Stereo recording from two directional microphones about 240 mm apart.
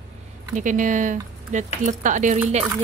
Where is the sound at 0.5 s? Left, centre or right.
Right.